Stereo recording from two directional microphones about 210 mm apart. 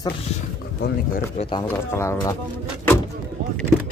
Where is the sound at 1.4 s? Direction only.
25° left (ahead or behind).